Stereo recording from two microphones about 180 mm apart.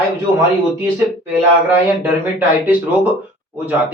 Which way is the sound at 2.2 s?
10° right (ahead or behind).